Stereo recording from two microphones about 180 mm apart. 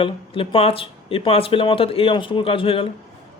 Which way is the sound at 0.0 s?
30° left (ahead or behind).